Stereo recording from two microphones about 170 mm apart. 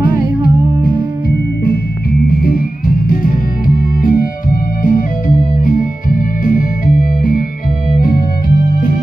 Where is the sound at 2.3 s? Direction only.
60° left (ahead or behind).